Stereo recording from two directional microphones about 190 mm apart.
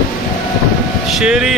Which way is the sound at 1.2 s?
5° right (ahead or behind).